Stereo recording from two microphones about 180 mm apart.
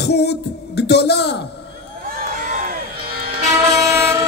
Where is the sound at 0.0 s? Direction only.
65° left (ahead or behind).